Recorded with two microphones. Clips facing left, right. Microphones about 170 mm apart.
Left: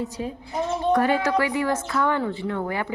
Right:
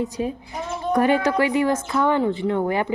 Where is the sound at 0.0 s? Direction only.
15° right (ahead or behind).